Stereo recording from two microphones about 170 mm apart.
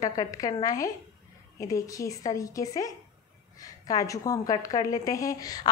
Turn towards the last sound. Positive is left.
turn(degrees=20)  # may be behind; listen again after turning